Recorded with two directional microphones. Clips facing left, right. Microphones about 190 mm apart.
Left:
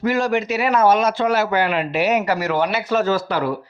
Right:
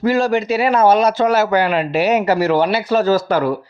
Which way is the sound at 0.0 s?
30° right (ahead or behind).